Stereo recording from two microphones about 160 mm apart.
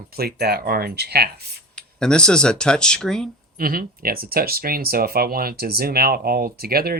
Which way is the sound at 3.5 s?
65° right (ahead or behind).